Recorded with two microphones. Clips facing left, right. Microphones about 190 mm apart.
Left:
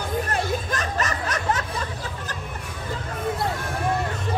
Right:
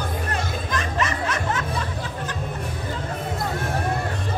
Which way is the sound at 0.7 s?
40° left (ahead or behind).